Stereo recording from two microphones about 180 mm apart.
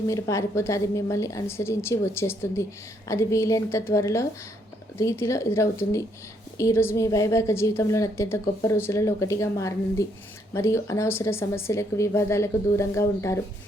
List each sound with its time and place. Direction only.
0.1 s a woman's voice: 15° left (ahead or behind)